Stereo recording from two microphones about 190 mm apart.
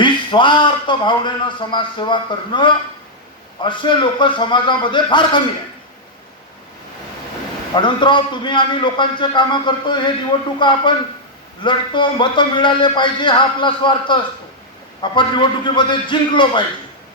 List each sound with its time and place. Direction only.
0.0 s a man's voice: 25° left (ahead or behind)
7.8 s a man's voice: 25° left (ahead or behind)